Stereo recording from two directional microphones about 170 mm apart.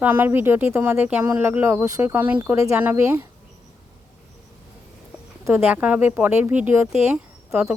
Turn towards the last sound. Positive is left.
turn(degrees=-5)  # may be behind; listen again after turning